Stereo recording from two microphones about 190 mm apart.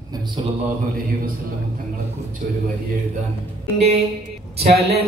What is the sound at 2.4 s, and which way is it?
Speech, 45° right (ahead or behind).